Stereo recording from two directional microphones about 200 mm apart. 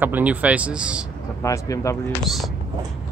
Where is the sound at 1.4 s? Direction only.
15° left (ahead or behind).